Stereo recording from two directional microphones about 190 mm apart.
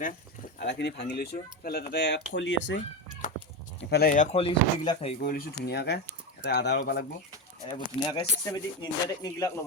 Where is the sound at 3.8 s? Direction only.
55° left (ahead or behind); by 5.1 s 30° left (ahead or behind).